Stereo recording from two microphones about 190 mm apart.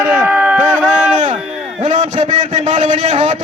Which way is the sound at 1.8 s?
40° right (ahead or behind).